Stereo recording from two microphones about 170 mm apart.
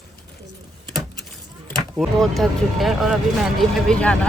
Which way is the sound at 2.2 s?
Centre (ahead or behind).